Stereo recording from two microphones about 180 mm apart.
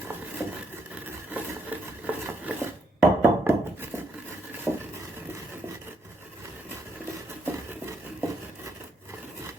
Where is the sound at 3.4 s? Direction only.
10° right (ahead or behind).